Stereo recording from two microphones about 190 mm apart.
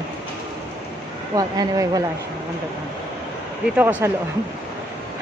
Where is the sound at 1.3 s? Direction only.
20° right (ahead or behind).